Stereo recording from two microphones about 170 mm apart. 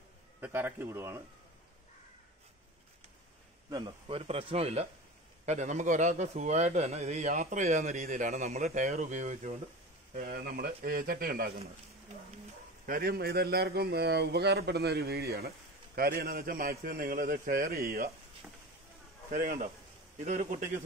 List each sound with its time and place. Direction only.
0.4 s speech: 10° right (ahead or behind)
3.7 s a man's voice: 25° right (ahead or behind); by 9.5 s 45° right (ahead or behind)
10.1 s speech: 60° right (ahead or behind)
12.8 s speech: 60° right (ahead or behind)
19.3 s a man's voice: 50° right (ahead or behind)